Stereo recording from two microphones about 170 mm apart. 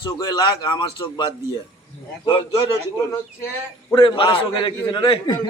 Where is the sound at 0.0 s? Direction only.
25° left (ahead or behind).